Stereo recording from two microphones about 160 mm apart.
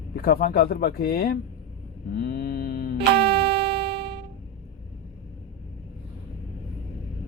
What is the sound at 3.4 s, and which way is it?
Music, 35° right (ahead or behind).